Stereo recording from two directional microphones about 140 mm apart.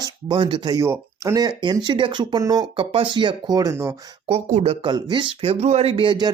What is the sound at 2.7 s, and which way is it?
Speech, 40° right (ahead or behind).